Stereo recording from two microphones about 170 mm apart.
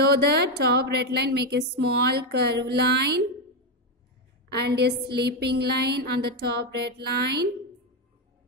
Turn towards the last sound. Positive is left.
turn(degrees=-70)  # may be behind; listen again after turning